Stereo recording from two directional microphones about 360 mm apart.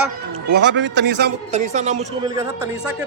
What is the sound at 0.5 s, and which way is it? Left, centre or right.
A man's voice, right.